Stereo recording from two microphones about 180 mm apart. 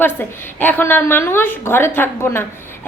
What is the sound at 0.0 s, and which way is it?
A woman's voice, 10° left (ahead or behind).